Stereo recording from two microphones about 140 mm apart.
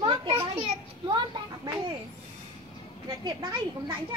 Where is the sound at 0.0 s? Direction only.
35° right (ahead or behind).